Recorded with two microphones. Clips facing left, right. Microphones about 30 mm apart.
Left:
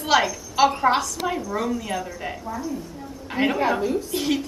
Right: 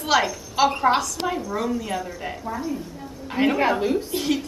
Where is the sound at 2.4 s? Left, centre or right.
Right.